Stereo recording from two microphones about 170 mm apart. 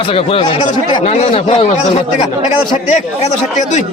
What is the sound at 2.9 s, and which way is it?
Speech, 45° left (ahead or behind).